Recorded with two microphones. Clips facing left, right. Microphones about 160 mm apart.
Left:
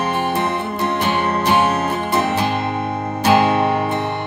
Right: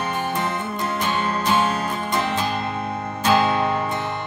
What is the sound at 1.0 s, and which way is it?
Music, 65° left (ahead or behind).